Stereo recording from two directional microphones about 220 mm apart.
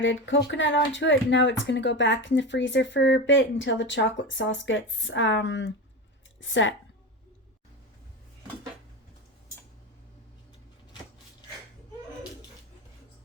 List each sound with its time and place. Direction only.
0.0 s speech: 55° left (ahead or behind)